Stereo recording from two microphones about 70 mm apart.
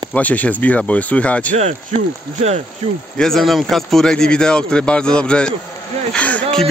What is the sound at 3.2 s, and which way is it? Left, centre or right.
Speech, centre.